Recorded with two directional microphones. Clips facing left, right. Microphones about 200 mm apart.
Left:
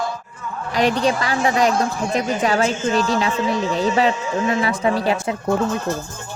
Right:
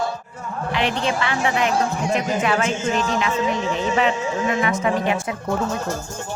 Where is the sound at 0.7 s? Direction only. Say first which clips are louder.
Left 5 dB; 40° left (ahead or behind).